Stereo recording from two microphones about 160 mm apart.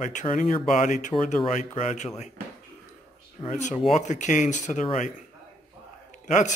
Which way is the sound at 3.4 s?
50° left (ahead or behind).